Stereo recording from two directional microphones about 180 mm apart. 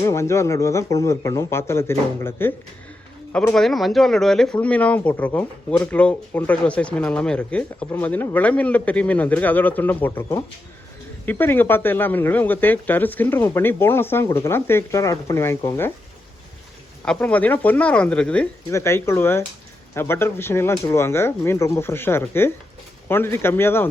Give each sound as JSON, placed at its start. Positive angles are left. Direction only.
{"t": 0.0, "sound": "speech", "side_deg": 15}
{"t": 17.1, "sound": "speech", "side_deg": 10}